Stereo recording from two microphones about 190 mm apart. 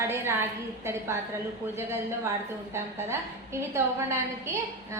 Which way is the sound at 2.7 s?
15° right (ahead or behind).